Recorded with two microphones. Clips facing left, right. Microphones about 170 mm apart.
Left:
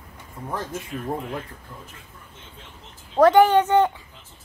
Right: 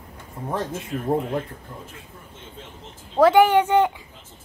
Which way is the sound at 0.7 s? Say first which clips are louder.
Right 5 dB; 20° right (ahead or behind).